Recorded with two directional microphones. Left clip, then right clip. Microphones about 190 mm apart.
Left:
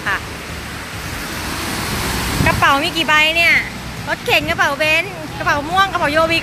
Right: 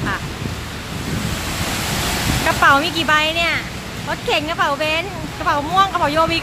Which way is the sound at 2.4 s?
15° right (ahead or behind).